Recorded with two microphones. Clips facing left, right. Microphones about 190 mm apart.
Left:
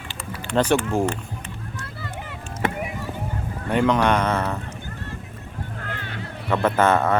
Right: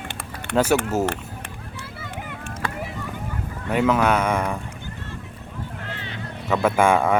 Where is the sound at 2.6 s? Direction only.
20° left (ahead or behind).